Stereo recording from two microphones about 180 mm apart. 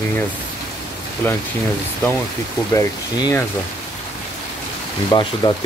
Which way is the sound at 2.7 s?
20° left (ahead or behind).